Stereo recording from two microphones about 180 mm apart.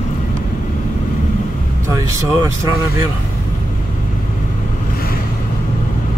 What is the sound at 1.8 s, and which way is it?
Vehicle, 15° right (ahead or behind).